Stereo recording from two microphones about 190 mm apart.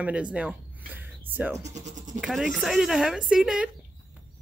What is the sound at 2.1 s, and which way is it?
Speech, 5° right (ahead or behind).